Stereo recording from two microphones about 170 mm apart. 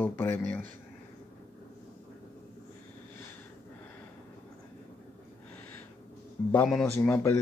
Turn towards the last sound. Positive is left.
turn(degrees=15)  # may be behind; listen again after turning